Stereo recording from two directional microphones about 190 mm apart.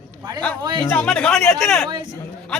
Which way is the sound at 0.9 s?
5° left (ahead or behind).